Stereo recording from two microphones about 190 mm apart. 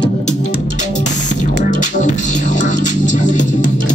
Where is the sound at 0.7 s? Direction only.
40° left (ahead or behind).